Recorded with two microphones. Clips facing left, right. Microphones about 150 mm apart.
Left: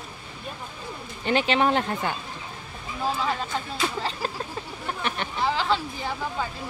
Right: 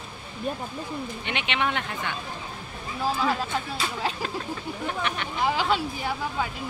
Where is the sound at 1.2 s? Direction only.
35° left (ahead or behind).